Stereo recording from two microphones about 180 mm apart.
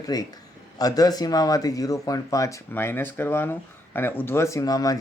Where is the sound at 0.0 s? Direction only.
20° left (ahead or behind).